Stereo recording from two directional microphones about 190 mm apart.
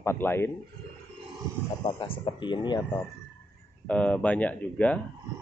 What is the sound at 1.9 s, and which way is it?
Speech, 25° left (ahead or behind).